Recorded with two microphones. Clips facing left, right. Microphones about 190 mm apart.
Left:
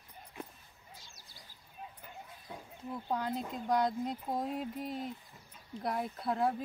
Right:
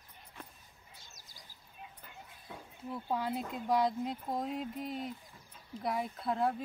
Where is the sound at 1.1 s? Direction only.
45° right (ahead or behind).